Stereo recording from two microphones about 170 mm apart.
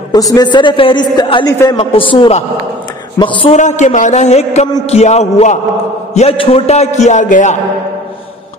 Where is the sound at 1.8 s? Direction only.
30° left (ahead or behind).